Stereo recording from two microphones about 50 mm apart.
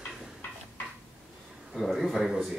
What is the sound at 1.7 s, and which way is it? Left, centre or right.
Speech, centre.